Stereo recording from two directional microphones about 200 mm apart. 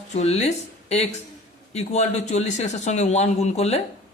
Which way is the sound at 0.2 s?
30° left (ahead or behind).